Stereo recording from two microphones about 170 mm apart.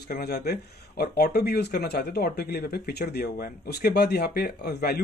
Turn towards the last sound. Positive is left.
turn(degrees=70)  # may be behind; listen again after turning